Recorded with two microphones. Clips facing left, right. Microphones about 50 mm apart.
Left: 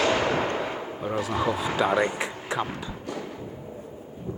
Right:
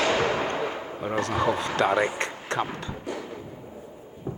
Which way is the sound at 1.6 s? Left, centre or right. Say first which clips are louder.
Even; centre.